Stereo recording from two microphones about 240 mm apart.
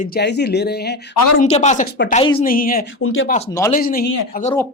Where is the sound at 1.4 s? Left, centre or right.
Left.